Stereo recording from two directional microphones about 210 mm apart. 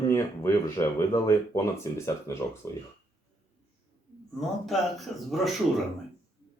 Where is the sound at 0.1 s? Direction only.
15° left (ahead or behind).